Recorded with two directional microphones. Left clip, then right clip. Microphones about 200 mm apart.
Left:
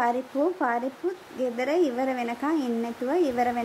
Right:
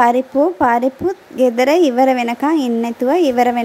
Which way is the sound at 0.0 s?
35° right (ahead or behind).